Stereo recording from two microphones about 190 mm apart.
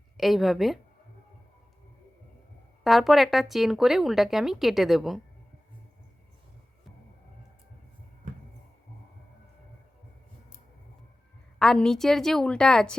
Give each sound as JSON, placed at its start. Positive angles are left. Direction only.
{"t": 0.2, "sound": "speech", "side_deg": 0}
{"t": 2.8, "sound": "speech", "side_deg": 0}
{"t": 8.2, "sound": "a sound", "side_deg": -40}
{"t": 11.6, "sound": "speech", "side_deg": 5}